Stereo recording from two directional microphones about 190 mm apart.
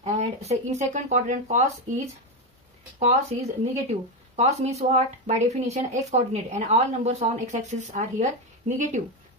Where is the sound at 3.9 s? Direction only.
35° right (ahead or behind).